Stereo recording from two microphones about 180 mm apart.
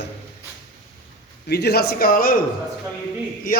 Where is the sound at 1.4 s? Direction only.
60° left (ahead or behind).